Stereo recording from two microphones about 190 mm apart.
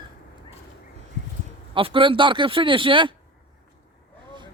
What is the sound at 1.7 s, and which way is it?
Speech, 25° right (ahead or behind).